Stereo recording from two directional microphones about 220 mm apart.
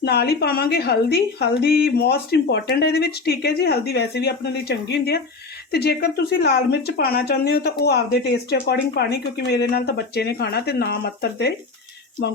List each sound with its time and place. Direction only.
0.0 s speech: 45° left (ahead or behind)